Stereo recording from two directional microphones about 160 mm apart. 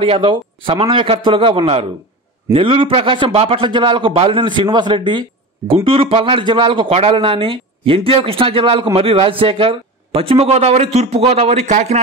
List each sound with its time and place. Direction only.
0.0 s speech: 35° right (ahead or behind)